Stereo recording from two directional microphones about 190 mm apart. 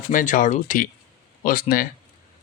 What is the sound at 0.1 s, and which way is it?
Speech, 45° left (ahead or behind).